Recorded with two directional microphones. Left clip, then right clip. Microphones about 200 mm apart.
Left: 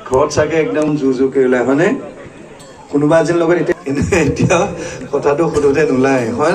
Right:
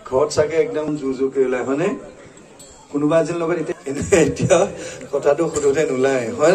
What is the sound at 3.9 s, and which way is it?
A man's voice, 65° right (ahead or behind).